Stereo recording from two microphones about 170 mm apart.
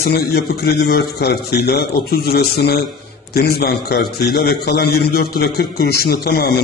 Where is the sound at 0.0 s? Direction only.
70° left (ahead or behind).